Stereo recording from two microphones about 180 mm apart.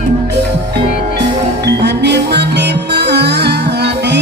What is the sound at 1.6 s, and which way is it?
Music, 70° right (ahead or behind).